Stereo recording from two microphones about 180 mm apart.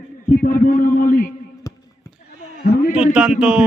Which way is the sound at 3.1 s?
5° right (ahead or behind).